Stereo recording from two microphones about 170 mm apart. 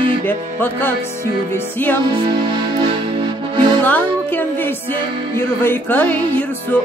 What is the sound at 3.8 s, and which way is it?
Speech, 10° left (ahead or behind).